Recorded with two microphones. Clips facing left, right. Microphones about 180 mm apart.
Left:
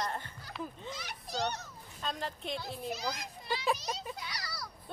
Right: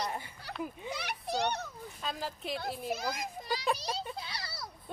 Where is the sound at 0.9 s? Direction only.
65° right (ahead or behind).